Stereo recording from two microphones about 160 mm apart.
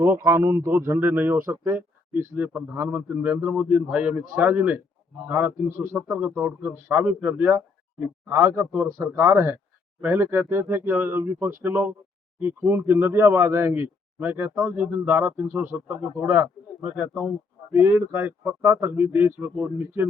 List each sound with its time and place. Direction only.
0.2 s speech: 15° right (ahead or behind)